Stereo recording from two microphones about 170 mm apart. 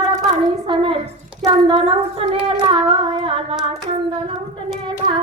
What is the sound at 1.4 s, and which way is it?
Humming, 30° right (ahead or behind).